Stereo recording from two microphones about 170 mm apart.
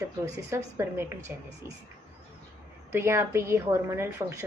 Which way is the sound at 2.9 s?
15° right (ahead or behind).